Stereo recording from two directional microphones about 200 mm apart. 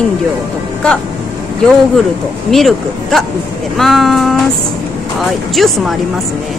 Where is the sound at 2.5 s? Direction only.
Centre (ahead or behind).